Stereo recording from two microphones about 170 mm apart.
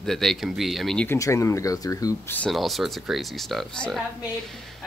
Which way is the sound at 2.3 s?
5° left (ahead or behind).